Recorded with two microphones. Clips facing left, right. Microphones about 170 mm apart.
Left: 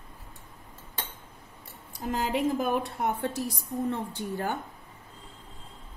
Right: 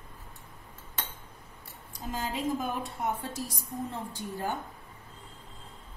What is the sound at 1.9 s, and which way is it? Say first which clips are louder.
A woman's voice: left 6 dB; 60° left (ahead or behind).